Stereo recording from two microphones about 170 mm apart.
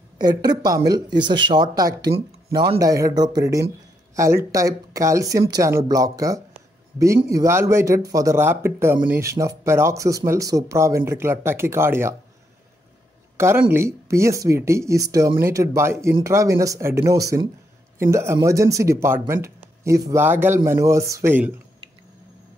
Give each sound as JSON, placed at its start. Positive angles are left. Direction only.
{"t": 0.2, "sound": "speech", "side_deg": -25}
{"t": 13.4, "sound": "speech", "side_deg": -15}